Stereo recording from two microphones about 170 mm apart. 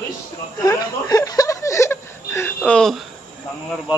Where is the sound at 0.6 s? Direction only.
20° left (ahead or behind).